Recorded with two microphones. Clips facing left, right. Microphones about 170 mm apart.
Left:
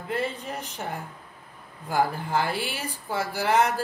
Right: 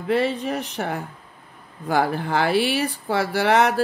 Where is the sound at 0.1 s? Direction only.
75° right (ahead or behind).